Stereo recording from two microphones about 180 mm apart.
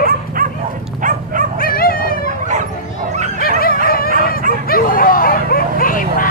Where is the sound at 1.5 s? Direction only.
55° left (ahead or behind).